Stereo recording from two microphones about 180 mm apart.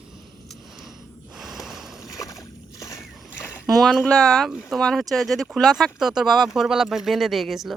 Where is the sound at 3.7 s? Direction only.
Centre (ahead or behind).